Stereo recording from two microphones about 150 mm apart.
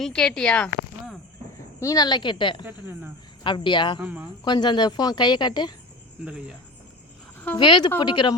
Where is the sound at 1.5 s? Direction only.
20° left (ahead or behind).